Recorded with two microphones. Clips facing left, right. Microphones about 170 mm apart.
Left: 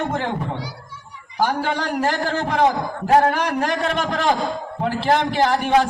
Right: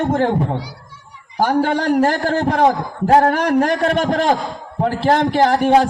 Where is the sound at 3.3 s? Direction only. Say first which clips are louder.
Right 6 dB; 50° right (ahead or behind).